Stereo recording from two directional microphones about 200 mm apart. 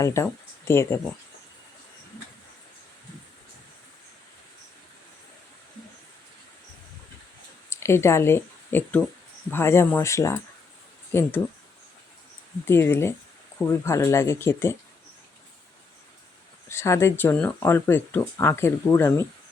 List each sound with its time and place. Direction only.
0.0 s speech: 15° left (ahead or behind)
7.7 s speech: 15° left (ahead or behind)
12.6 s speech: 10° left (ahead or behind)
16.6 s speech: 15° left (ahead or behind)